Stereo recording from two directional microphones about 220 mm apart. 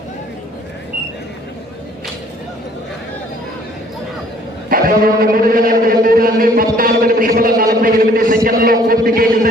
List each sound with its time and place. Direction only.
4.7 s a man's voice: 40° right (ahead or behind)
6.7 s a sound: 40° right (ahead or behind)
7.6 s a man's voice: 40° right (ahead or behind)